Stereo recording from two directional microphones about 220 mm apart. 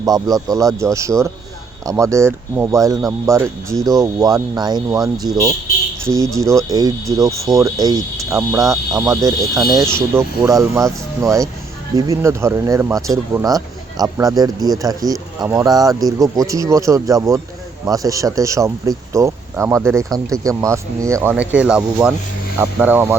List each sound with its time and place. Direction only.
0.0 s speech: 15° right (ahead or behind)